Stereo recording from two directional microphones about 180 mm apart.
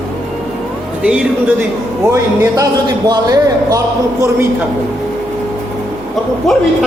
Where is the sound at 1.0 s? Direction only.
5° right (ahead or behind).